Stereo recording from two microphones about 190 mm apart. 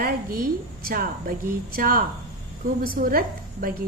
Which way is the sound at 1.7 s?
50° right (ahead or behind).